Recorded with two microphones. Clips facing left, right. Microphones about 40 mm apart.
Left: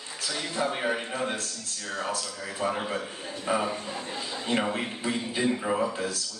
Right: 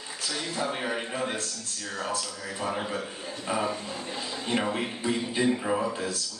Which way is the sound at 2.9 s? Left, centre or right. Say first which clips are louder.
Left 1 dB; centre.